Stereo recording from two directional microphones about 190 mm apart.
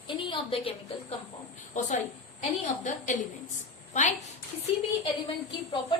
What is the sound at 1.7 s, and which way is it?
A woman's voice, 40° left (ahead or behind).